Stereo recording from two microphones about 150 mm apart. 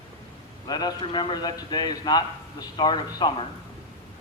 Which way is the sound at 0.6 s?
30° left (ahead or behind).